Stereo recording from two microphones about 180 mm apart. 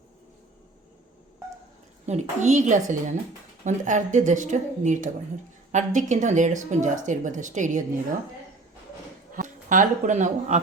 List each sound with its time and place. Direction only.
2.0 s speech: 40° right (ahead or behind)
9.3 s speech: 45° right (ahead or behind)